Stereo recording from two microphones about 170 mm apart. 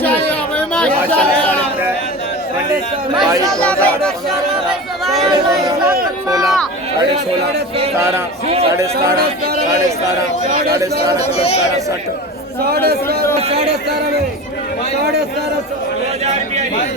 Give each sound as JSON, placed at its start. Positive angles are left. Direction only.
{"t": 0.0, "sound": "chatter", "side_deg": 10}
{"t": 3.8, "sound": "speech", "side_deg": 5}
{"t": 7.9, "sound": "a man's voice", "side_deg": -15}
{"t": 11.2, "sound": "speech", "side_deg": 40}
{"t": 12.6, "sound": "a man's voice", "side_deg": -65}